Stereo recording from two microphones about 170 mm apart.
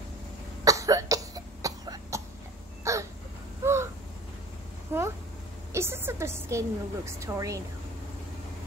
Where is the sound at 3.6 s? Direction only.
15° right (ahead or behind).